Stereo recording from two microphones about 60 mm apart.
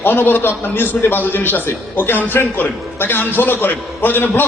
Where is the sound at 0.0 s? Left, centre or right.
Left.